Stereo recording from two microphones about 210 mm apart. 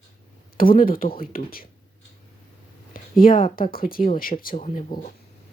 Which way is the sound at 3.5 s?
45° left (ahead or behind).